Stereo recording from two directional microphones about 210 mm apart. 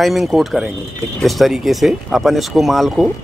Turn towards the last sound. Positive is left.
turn(degrees=0)  # may be behind; listen again after turning